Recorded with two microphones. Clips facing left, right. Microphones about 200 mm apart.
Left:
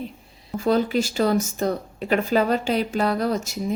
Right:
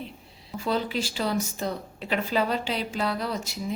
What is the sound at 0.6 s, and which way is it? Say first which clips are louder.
Speech: left 7 dB; 45° left (ahead or behind).